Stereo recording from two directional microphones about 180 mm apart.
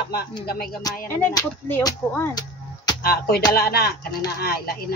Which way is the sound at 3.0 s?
55° left (ahead or behind).